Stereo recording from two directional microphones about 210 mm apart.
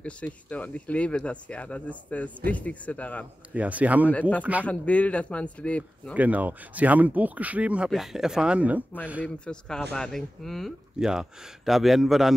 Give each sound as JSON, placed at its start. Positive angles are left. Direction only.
{"t": 0.0, "sound": "speech", "side_deg": 5}
{"t": 3.5, "sound": "speech", "side_deg": -5}
{"t": 4.1, "sound": "speech", "side_deg": 10}
{"t": 4.4, "sound": "speech", "side_deg": -5}
{"t": 4.6, "sound": "speech", "side_deg": 5}
{"t": 6.1, "sound": "speech", "side_deg": -5}
{"t": 9.5, "sound": "speech", "side_deg": 5}